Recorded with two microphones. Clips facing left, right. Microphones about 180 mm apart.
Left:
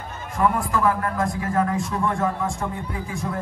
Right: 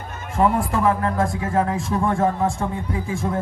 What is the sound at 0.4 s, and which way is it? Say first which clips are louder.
Speech: right 2 dB; 25° right (ahead or behind).